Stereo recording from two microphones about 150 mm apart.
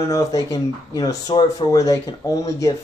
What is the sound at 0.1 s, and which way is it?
Speech, 25° left (ahead or behind).